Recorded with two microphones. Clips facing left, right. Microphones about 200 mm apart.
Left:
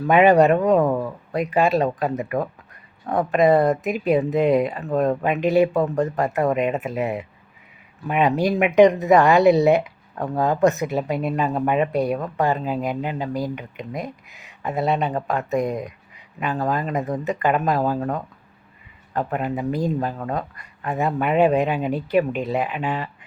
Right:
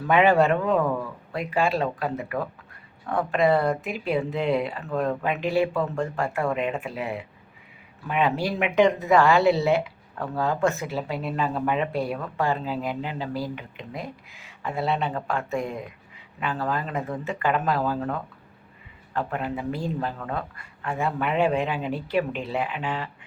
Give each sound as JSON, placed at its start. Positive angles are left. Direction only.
{"t": 0.1, "sound": "speech", "side_deg": 20}
{"t": 6.2, "sound": "speech", "side_deg": 40}
{"t": 6.5, "sound": "speech", "side_deg": 20}
{"t": 19.1, "sound": "speech", "side_deg": 20}
{"t": 19.8, "sound": "speech", "side_deg": 40}
{"t": 20.6, "sound": "speech", "side_deg": 20}